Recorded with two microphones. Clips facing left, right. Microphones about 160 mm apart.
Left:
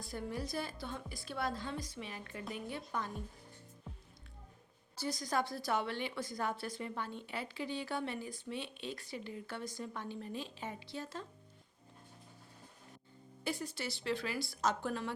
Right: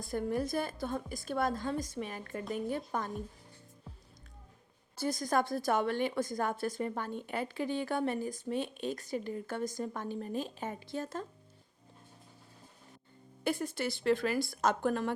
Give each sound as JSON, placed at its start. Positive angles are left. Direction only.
{"t": 0.0, "sound": "a woman's voice", "side_deg": -50}
{"t": 4.9, "sound": "a woman's voice", "side_deg": -50}
{"t": 13.4, "sound": "a woman's voice", "side_deg": -50}